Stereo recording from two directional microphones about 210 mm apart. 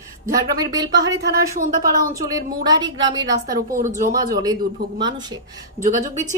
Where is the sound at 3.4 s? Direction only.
40° right (ahead or behind).